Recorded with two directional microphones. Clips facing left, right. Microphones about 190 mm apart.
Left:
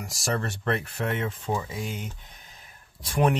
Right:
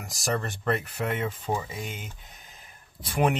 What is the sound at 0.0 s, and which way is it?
Speech, centre (ahead or behind).